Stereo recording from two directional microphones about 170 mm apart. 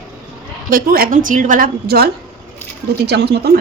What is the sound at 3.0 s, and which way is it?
Speech, 80° right.